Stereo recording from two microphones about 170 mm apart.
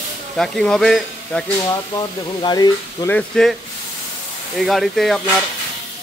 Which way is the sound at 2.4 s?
25° left (ahead or behind).